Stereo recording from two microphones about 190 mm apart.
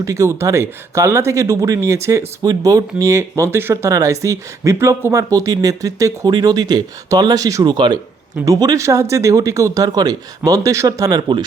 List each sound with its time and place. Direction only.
0.0 s speech: 15° right (ahead or behind)